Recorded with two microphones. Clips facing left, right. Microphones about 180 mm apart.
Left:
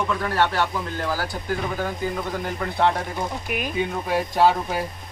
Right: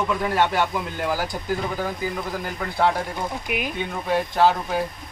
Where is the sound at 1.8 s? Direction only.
5° right (ahead or behind).